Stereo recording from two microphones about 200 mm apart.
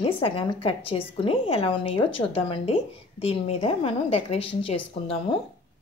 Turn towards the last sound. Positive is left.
turn(degrees=30)  # may be behind; listen again after turning